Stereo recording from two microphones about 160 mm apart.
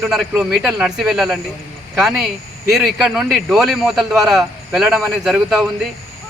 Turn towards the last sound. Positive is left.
turn(degrees=-5)  # may be behind; listen again after turning